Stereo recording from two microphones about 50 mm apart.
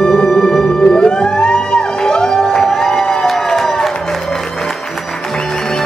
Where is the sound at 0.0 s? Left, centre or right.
Centre.